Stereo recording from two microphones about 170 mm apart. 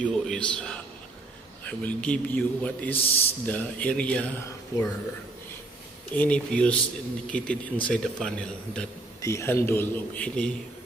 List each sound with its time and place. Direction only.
0.0 s a man's voice: 5° left (ahead or behind)
3.0 s a man's voice: 35° left (ahead or behind)
3.4 s a man's voice: 10° left (ahead or behind)
6.1 s a man's voice: 10° left (ahead or behind)
9.2 s a man's voice: 15° left (ahead or behind)